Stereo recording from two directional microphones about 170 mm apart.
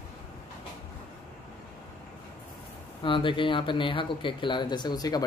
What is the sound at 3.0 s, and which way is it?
Speech, 30° left (ahead or behind).